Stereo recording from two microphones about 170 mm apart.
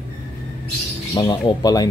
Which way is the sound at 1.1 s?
25° left (ahead or behind).